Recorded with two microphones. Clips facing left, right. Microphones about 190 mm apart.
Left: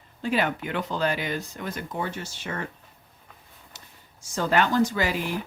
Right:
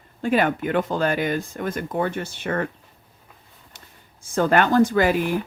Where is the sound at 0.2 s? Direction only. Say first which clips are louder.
Right 5 dB; 50° right (ahead or behind).